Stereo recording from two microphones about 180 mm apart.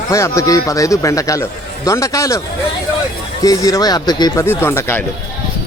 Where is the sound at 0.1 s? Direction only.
15° left (ahead or behind).